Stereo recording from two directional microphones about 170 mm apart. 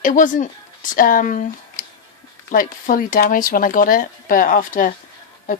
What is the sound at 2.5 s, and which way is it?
A woman's voice, 55° left (ahead or behind).